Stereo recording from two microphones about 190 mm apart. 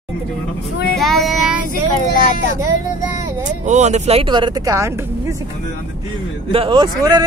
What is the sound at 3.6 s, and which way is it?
Speech, 35° right (ahead or behind).